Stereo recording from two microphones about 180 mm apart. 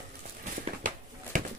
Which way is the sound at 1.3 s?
45° right (ahead or behind).